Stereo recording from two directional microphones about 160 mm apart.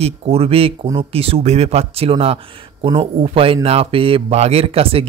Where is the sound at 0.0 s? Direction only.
40° right (ahead or behind).